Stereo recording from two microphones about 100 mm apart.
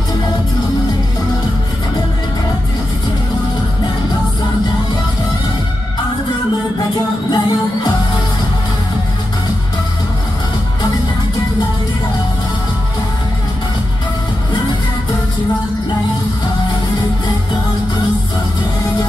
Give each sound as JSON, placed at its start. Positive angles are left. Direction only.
{"t": 7.2, "sound": "music", "side_deg": 45}